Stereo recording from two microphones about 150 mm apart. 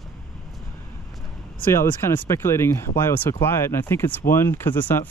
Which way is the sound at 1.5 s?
15° left (ahead or behind).